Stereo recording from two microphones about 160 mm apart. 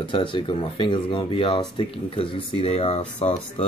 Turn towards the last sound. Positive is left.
turn(degrees=45)  # may be behind; listen again after turning